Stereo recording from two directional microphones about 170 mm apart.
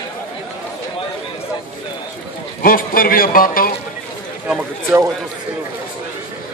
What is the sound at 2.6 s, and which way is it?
A man's voice, 55° left (ahead or behind).